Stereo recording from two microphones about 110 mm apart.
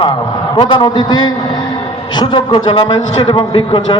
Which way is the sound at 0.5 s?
45° left (ahead or behind).